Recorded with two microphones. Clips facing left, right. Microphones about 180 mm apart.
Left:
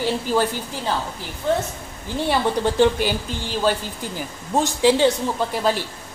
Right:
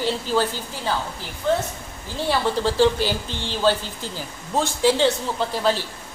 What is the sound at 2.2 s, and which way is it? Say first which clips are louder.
A woman's voice: left 1 dB; 15° left (ahead or behind).